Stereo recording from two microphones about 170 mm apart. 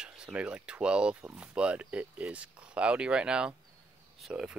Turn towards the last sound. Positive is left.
turn(degrees=-5)  # may be behind; listen again after turning